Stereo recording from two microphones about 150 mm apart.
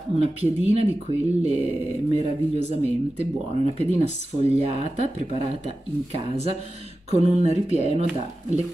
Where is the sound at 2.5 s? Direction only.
45° right (ahead or behind).